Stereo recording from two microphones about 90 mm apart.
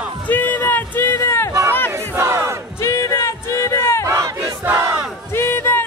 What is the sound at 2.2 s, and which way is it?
Battle cry, 30° right (ahead or behind).